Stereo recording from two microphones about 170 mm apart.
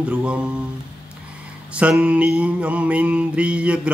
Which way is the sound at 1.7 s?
5° right (ahead or behind).